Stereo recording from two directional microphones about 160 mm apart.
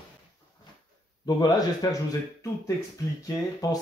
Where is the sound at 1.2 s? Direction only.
25° left (ahead or behind).